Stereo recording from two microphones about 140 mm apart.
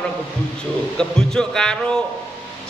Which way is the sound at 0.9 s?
5° left (ahead or behind).